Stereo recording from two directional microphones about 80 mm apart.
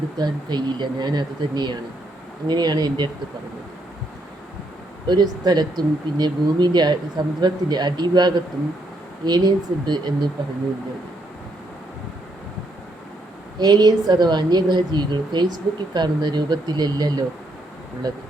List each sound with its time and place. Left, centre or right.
0.2 s a woman's voice: right
5.0 s a woman's voice: right
13.6 s a woman's voice: right